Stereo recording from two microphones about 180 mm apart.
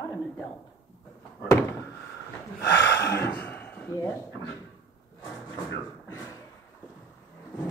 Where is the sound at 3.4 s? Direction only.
10° left (ahead or behind).